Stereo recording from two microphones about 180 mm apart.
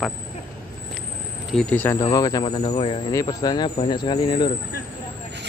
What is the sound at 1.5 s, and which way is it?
Speech, 5° left (ahead or behind).